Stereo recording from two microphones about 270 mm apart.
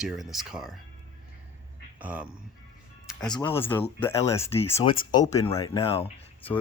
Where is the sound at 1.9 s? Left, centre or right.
Centre.